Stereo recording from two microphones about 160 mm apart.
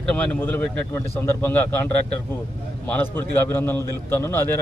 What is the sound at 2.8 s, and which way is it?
Speech, 15° left (ahead or behind).